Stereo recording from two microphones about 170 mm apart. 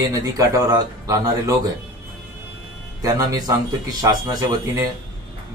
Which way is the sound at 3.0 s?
20° right (ahead or behind).